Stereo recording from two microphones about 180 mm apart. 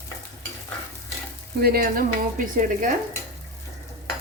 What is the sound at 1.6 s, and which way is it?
Speech, 55° right (ahead or behind).